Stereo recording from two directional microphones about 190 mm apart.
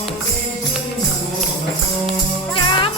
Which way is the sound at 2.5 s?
25° left (ahead or behind).